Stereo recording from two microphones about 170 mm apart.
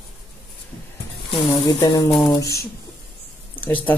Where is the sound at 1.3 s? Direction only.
25° left (ahead or behind).